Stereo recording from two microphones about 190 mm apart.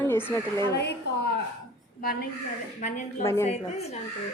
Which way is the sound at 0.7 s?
60° left (ahead or behind).